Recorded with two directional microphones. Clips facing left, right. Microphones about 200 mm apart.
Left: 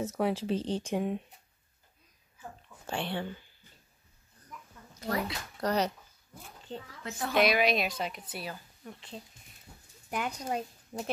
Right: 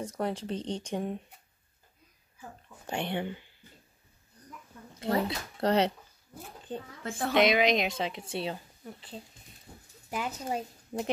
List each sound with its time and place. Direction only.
0.0 s speech: 5° left (ahead or behind)
2.9 s speech: 20° right (ahead or behind)
5.0 s speech: 25° right (ahead or behind)
8.8 s speech: 5° right (ahead or behind)